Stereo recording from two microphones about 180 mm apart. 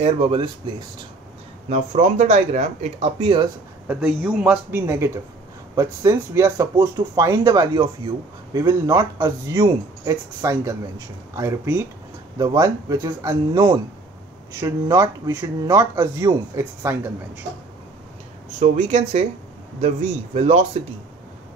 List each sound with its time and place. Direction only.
0.0 s speech: 30° right (ahead or behind)
1.7 s speech: 40° right (ahead or behind)
3.8 s a man's voice: 10° right (ahead or behind)
18.6 s speech: 40° right (ahead or behind)
20.3 s speech: 40° right (ahead or behind)